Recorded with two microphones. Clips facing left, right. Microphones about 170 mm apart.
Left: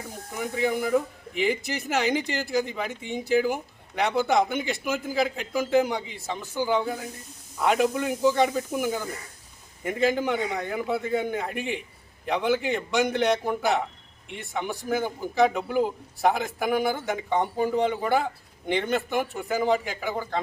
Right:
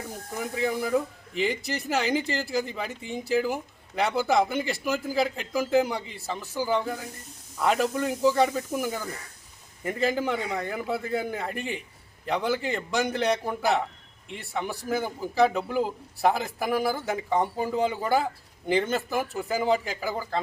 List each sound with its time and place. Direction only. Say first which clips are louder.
0.3 s speech: left 2 dB; centre (ahead or behind)
19.8 s a man's voice: even; 35° right (ahead or behind)
20.1 s speech: left 1 dB; centre (ahead or behind)